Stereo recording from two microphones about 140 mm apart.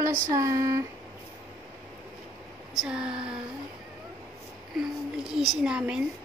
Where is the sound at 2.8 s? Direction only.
5° right (ahead or behind).